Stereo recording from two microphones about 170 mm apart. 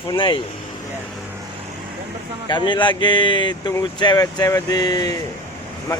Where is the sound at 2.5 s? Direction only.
25° left (ahead or behind).